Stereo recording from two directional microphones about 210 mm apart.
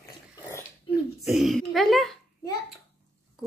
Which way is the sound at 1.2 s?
Centre (ahead or behind).